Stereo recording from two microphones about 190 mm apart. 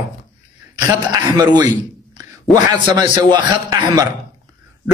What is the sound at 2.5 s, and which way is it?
A man's voice, 20° right (ahead or behind).